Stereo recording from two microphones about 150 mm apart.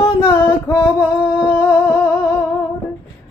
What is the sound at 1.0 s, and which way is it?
Humming, 10° left (ahead or behind).